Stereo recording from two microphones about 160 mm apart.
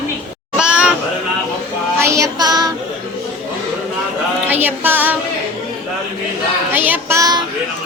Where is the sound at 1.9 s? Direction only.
20° right (ahead or behind).